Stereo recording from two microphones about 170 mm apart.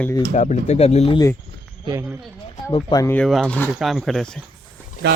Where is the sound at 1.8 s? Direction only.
20° right (ahead or behind).